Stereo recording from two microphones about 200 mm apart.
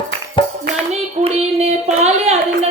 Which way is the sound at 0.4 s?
25° left (ahead or behind).